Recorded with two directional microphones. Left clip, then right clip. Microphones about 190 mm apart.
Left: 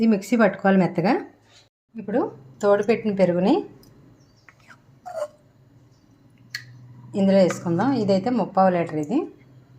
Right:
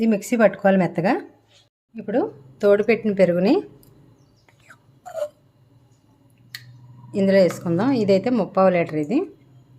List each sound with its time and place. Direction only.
0.0 s a woman's voice: 20° right (ahead or behind)
7.1 s a woman's voice: 20° right (ahead or behind)